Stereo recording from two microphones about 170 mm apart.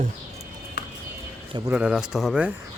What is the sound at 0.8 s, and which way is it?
Music, 70° left (ahead or behind).